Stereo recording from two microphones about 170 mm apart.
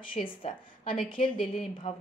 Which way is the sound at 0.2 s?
35° left (ahead or behind).